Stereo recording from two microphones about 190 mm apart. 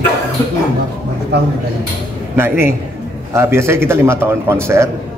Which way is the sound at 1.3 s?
60° right (ahead or behind).